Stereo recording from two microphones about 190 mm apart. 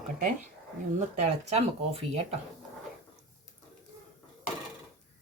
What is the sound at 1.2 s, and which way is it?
Dishes, 35° right (ahead or behind).